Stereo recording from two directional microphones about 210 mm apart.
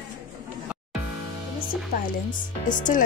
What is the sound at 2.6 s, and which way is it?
Speech, 40° left (ahead or behind).